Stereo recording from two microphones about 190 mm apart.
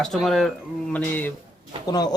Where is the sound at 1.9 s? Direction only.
20° left (ahead or behind).